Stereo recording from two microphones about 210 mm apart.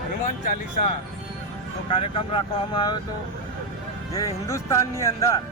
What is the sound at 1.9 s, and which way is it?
Speech, 25° left (ahead or behind).